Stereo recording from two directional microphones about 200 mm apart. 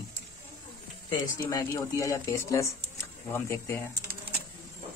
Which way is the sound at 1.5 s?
15° left (ahead or behind).